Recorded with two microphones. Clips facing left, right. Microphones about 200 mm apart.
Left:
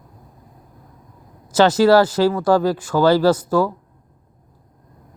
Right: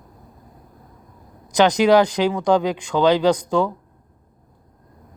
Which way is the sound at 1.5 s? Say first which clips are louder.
Left 2 dB; 15° right (ahead or behind).